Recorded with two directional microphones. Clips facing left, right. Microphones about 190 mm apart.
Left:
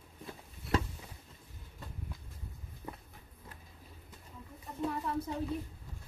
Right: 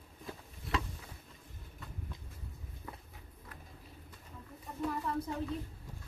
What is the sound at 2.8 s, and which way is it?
Walk, 25° left (ahead or behind).